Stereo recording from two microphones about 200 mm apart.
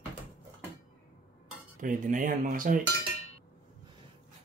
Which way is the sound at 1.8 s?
40° right (ahead or behind).